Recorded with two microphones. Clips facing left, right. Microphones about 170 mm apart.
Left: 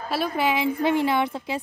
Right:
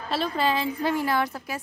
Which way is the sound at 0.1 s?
15° left (ahead or behind).